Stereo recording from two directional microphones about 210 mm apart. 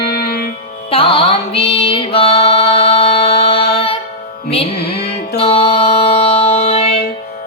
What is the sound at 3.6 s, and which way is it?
Music, 50° left (ahead or behind).